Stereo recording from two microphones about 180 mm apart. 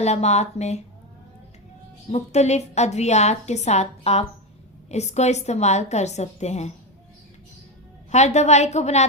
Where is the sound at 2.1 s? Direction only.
40° left (ahead or behind).